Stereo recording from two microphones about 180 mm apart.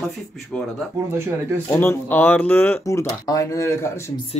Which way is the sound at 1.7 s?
15° left (ahead or behind).